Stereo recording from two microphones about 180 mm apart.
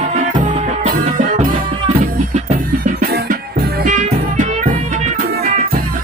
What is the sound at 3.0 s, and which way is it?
Music, 60° right (ahead or behind).